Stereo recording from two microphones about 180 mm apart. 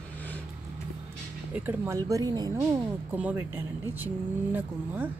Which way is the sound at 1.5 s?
10° right (ahead or behind).